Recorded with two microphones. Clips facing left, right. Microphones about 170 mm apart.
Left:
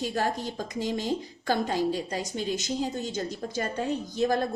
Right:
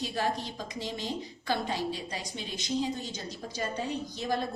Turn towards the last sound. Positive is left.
turn(degrees=50)  # may be behind; listen again after turning